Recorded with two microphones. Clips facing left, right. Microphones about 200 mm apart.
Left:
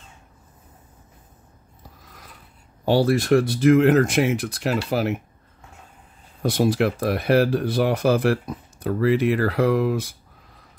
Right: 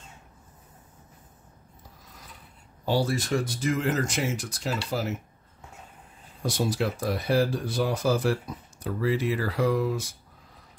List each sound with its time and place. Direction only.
2.8 s speech: 65° left (ahead or behind)
6.4 s speech: 60° left (ahead or behind)